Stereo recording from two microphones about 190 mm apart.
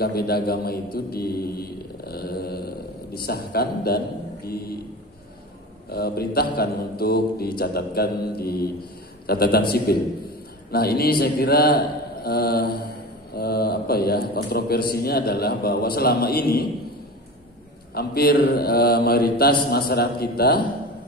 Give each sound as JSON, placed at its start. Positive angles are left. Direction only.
{"t": 0.0, "sound": "a man's voice", "side_deg": 55}
{"t": 0.9, "sound": "mantra", "side_deg": 55}
{"t": 3.2, "sound": "a man's voice", "side_deg": 55}
{"t": 5.9, "sound": "a man's voice", "side_deg": 55}
{"t": 9.3, "sound": "mantra", "side_deg": 55}
{"t": 13.3, "sound": "a man's voice", "side_deg": 55}
{"t": 14.9, "sound": "mantra", "side_deg": 55}
{"t": 17.9, "sound": "mantra", "side_deg": 55}
{"t": 19.7, "sound": "a man's voice", "side_deg": 55}